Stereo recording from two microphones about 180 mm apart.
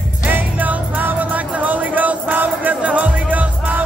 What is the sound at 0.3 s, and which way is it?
Music, 10° right (ahead or behind).